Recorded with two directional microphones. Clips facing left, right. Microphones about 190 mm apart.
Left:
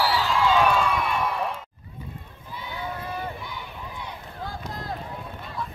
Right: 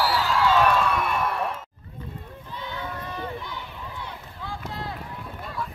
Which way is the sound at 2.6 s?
10° left (ahead or behind).